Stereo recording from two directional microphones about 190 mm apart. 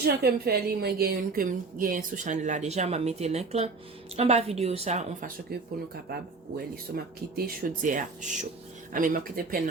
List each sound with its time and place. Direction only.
0.0 s a woman's voice: 55° right (ahead or behind); by 5.3 s 35° right (ahead or behind)
5.5 s speech: 55° right (ahead or behind)